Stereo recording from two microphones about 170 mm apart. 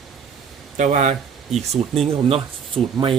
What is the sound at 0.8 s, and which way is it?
Speech, 45° right (ahead or behind).